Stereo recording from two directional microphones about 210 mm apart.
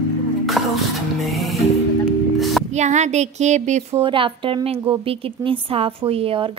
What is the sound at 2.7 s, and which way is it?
A woman's voice, 35° right (ahead or behind).